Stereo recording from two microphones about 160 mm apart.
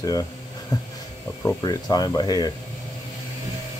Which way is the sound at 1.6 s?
25° left (ahead or behind).